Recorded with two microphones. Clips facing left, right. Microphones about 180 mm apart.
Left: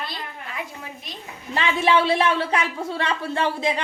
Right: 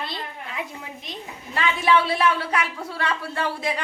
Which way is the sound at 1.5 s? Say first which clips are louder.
Left 1 dB; 25° left (ahead or behind).